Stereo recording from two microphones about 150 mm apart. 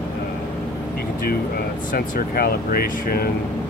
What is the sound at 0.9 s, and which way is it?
Speech, 90° left.